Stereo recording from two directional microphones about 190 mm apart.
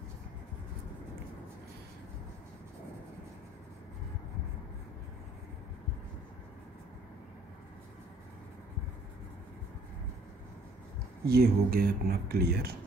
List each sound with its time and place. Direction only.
11.2 s speech: 55° right (ahead or behind)